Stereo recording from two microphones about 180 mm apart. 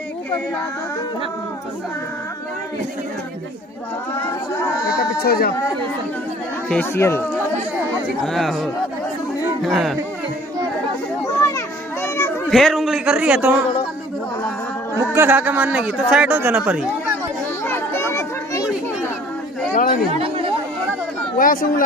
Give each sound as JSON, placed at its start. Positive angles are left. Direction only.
{"t": 5.2, "sound": "speech", "side_deg": 55}
{"t": 6.7, "sound": "speech", "side_deg": 10}
{"t": 8.2, "sound": "a man's voice", "side_deg": 0}
{"t": 11.2, "sound": "a sound", "side_deg": 15}
{"t": 12.4, "sound": "a man's voice", "side_deg": 0}
{"t": 15.1, "sound": "speech", "side_deg": -10}
{"t": 17.6, "sound": "a sound", "side_deg": 15}
{"t": 19.7, "sound": "chatter", "side_deg": 50}
{"t": 21.4, "sound": "speech", "side_deg": 50}